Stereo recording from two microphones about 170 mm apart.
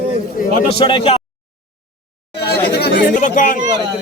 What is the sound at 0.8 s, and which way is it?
Speech, 30° left (ahead or behind).